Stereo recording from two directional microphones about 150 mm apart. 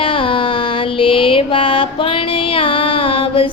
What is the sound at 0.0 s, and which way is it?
Music, 35° left (ahead or behind).